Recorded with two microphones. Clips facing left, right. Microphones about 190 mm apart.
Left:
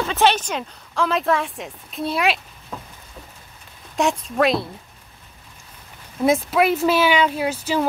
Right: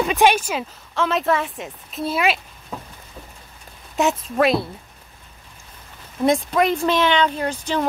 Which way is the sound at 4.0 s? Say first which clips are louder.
Right 1 dB; centre (ahead or behind).